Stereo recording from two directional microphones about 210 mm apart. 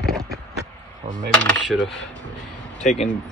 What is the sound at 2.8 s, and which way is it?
Speech, 35° left (ahead or behind).